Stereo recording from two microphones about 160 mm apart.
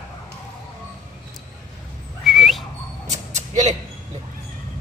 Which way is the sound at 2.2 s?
Centre (ahead or behind).